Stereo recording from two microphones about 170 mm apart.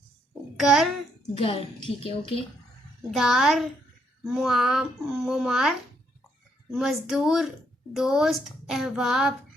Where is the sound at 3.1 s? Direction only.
Centre (ahead or behind).